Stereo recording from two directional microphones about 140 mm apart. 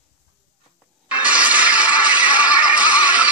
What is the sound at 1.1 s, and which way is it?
Neigh, 10° right (ahead or behind).